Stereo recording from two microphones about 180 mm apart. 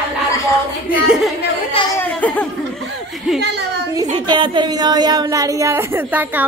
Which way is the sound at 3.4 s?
70° right (ahead or behind).